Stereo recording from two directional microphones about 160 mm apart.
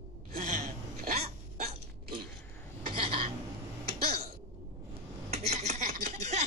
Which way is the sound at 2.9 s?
35° right (ahead or behind).